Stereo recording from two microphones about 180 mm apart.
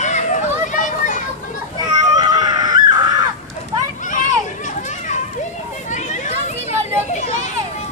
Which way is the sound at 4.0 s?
45° left (ahead or behind).